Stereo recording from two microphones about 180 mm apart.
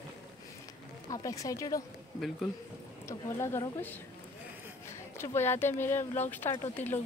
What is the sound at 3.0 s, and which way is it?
Speech, 15° left (ahead or behind).